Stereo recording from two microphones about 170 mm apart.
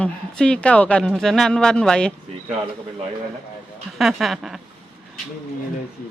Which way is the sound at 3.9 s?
Centre (ahead or behind).